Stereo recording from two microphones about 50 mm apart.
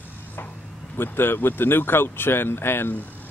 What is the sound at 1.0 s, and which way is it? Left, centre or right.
A man's voice, left.